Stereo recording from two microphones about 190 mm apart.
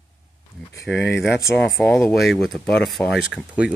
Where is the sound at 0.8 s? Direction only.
5° left (ahead or behind).